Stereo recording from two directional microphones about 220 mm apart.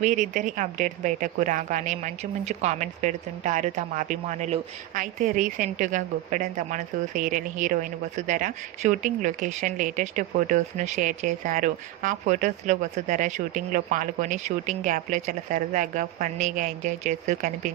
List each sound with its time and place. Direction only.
0.0 s speech: 35° right (ahead or behind)